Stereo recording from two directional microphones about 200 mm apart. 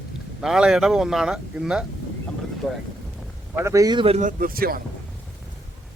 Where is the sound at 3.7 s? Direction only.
15° right (ahead or behind).